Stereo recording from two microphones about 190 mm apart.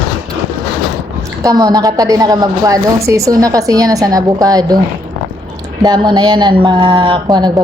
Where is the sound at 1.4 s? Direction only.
20° right (ahead or behind).